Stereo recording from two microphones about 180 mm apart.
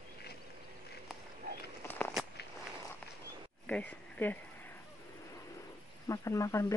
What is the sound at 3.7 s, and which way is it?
Speech, 10° left (ahead or behind).